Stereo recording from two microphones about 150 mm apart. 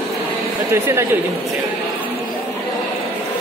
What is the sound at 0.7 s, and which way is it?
Speech, 20° right (ahead or behind).